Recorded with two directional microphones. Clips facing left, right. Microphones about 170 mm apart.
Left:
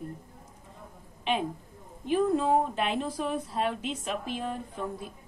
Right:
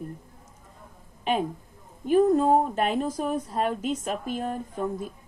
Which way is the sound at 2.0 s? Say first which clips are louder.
Right 6 dB; 45° right (ahead or behind).